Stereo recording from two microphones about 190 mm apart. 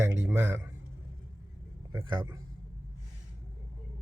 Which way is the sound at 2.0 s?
25° right (ahead or behind).